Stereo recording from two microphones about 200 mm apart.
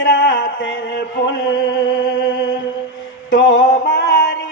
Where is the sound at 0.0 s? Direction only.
65° left (ahead or behind).